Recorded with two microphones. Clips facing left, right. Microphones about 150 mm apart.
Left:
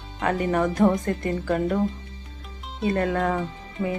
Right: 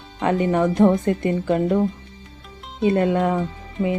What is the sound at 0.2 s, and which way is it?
Speech, 25° right (ahead or behind).